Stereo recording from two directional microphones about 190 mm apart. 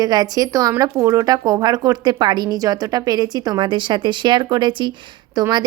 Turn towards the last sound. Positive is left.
turn(degrees=-20)  # may be behind; listen again after turning